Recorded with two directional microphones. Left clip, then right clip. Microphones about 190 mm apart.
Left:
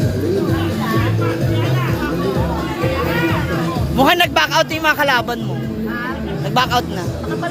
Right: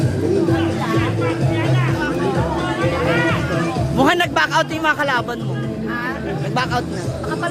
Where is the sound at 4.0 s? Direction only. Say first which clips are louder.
Left 3 dB; 10° right (ahead or behind).